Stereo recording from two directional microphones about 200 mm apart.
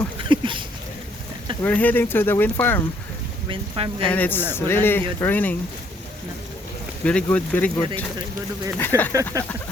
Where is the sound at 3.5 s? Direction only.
25° right (ahead or behind).